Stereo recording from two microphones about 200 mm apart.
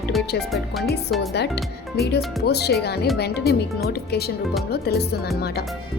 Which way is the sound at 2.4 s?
55° left (ahead or behind).